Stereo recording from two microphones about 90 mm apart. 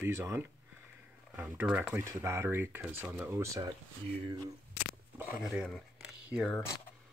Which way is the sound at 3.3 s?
35° right (ahead or behind).